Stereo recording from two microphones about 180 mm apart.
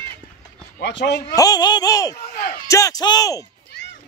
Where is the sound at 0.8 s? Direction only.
75° left (ahead or behind).